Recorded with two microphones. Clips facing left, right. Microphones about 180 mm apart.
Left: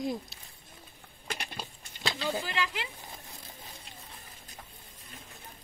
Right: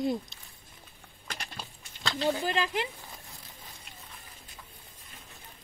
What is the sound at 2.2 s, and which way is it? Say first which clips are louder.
Speech: right 5 dB; 45° right (ahead or behind).